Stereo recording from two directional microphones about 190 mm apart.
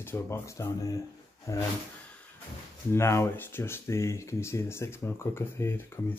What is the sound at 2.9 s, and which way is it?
Speech, 15° left (ahead or behind).